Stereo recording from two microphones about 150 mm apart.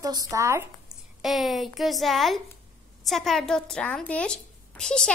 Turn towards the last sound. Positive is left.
turn(degrees=5)  # may be behind; listen again after turning